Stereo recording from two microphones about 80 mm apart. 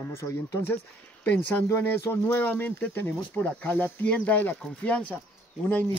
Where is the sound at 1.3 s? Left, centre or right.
Centre.